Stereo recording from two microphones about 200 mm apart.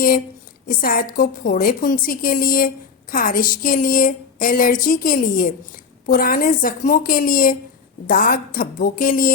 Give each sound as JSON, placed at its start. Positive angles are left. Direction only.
{"t": 0.8, "sound": "a woman's voice", "side_deg": 45}